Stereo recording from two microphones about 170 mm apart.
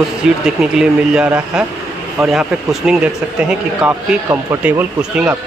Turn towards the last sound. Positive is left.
turn(degrees=-5)  # may be behind; listen again after turning